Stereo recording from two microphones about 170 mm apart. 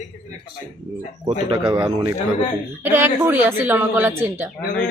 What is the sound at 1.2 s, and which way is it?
Speech, 30° right (ahead or behind).